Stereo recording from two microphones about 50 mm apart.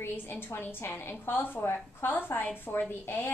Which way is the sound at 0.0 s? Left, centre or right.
Left.